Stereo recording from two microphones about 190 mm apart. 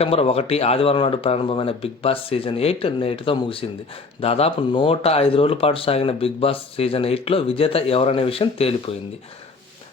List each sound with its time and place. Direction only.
0.0 s speech: 30° left (ahead or behind)